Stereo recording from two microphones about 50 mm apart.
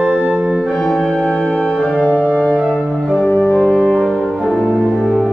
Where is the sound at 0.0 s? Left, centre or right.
Right.